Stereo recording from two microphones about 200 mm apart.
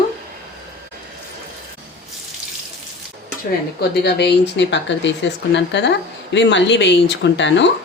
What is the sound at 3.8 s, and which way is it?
Speech, 55° left (ahead or behind).